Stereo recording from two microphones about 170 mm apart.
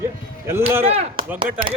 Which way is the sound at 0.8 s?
35° right (ahead or behind).